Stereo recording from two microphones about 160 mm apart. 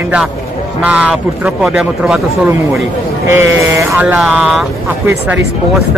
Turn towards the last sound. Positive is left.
turn(degrees=-5)  # may be behind; listen again after turning